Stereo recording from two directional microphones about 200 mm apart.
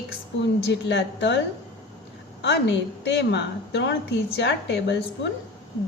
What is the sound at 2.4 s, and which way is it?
A woman's voice, 60° left (ahead or behind).